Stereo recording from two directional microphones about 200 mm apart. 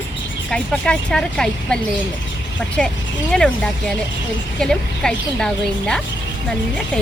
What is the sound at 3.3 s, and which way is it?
Speech, 5° left (ahead or behind).